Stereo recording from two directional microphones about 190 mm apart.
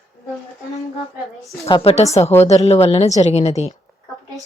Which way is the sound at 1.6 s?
25° left (ahead or behind).